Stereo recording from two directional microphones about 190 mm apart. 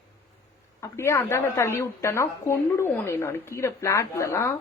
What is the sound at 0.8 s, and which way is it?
A woman's voice, 15° left (ahead or behind).